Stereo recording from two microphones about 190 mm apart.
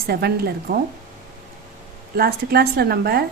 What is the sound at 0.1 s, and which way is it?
Speech, 55° right (ahead or behind).